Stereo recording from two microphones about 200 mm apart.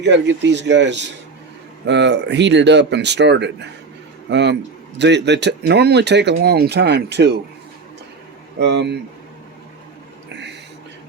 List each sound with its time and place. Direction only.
0.0 s speech: 60° right (ahead or behind)
8.5 s speech: 60° right (ahead or behind)